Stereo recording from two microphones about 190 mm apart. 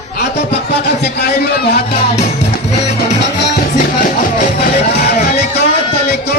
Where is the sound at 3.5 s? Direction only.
45° left (ahead or behind).